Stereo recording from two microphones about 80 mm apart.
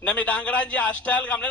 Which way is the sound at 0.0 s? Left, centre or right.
Centre.